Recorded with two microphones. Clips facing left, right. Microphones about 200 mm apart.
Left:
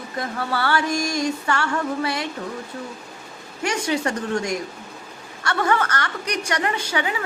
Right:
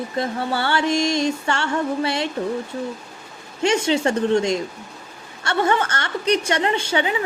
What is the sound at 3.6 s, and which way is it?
Music, 25° right (ahead or behind).